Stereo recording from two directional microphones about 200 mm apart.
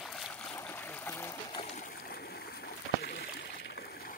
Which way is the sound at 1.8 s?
45° left (ahead or behind).